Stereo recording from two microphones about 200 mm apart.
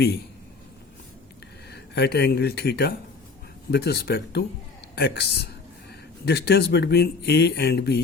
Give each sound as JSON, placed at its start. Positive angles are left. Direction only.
{"t": 1.7, "sound": "speech", "side_deg": 55}